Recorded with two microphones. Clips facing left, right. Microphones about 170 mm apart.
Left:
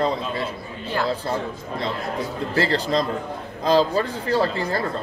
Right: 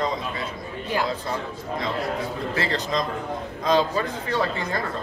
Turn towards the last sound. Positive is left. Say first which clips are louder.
# left 4 dB
turn(degrees=35)  # may be behind; listen again after turning